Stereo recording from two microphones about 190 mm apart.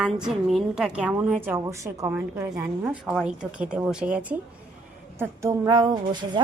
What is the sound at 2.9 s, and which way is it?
A woman's voice, centre (ahead or behind).